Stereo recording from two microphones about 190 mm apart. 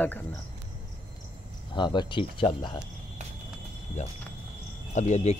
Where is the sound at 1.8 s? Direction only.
25° left (ahead or behind).